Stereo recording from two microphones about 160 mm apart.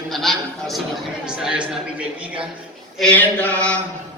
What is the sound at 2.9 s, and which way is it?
Speech, 10° left (ahead or behind).